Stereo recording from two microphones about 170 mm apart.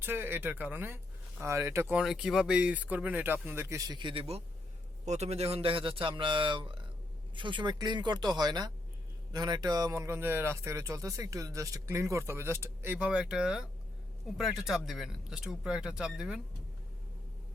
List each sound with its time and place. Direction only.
0.0 s speech: 10° right (ahead or behind)